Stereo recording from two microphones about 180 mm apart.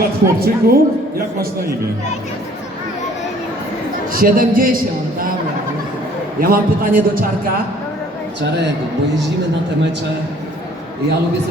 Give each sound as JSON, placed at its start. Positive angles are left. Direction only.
{"t": 0.0, "sound": "a woman's voice", "side_deg": -55}
{"t": 4.1, "sound": "a man's voice", "side_deg": -50}
{"t": 6.4, "sound": "a man's voice", "side_deg": -50}